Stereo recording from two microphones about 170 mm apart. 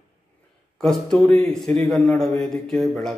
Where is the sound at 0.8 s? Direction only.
5° left (ahead or behind).